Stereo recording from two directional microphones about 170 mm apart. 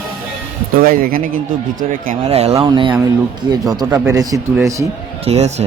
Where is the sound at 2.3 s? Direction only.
40° right (ahead or behind); by 4.4 s 20° right (ahead or behind).